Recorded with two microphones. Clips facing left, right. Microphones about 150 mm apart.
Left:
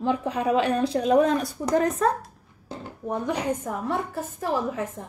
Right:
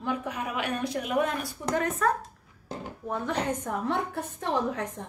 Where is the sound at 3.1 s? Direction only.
10° left (ahead or behind).